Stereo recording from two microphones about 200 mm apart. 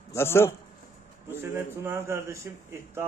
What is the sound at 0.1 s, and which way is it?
Speech, 10° left (ahead or behind).